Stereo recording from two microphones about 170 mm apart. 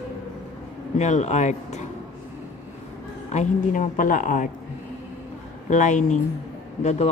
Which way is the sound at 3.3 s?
45° left (ahead or behind).